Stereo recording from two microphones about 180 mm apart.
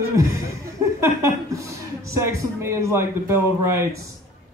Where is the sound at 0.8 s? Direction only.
15° right (ahead or behind).